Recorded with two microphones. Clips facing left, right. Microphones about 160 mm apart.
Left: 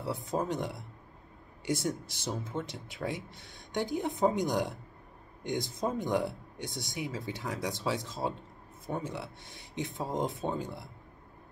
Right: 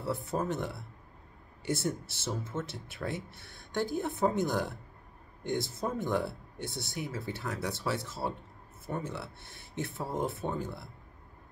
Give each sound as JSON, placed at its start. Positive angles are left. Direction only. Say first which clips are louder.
{"t": 0.0, "sound": "speech", "louder": "even", "side_deg": 15}